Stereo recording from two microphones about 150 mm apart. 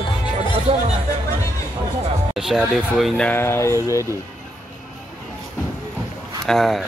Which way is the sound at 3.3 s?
15° left (ahead or behind).